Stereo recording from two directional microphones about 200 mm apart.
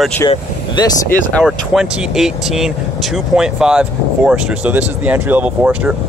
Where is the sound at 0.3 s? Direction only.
20° left (ahead or behind).